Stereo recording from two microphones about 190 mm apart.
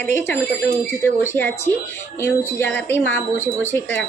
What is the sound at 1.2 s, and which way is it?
A woman's voice, 10° left (ahead or behind).